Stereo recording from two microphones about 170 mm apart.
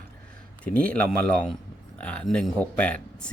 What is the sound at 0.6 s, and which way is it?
Speech, 10° left (ahead or behind).